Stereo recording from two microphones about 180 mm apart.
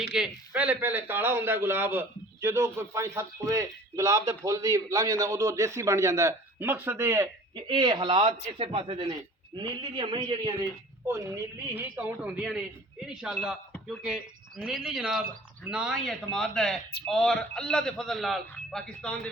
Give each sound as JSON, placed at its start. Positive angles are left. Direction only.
{"t": 0.0, "sound": "a man's voice", "side_deg": -5}